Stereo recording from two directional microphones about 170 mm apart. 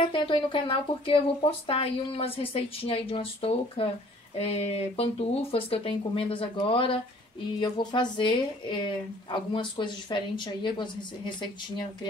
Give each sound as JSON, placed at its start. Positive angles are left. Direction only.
{"t": 0.0, "sound": "speech", "side_deg": 30}